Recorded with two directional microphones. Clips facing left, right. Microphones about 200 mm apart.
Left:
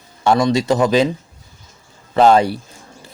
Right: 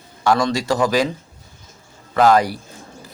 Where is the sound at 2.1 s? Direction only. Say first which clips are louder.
Left 3 dB; 25° left (ahead or behind).